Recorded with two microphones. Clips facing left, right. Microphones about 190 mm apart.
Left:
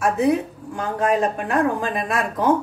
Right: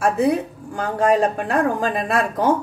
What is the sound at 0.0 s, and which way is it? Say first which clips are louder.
Speech: right 1 dB; 35° right (ahead or behind).